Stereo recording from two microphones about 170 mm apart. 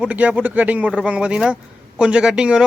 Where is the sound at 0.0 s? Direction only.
5° right (ahead or behind).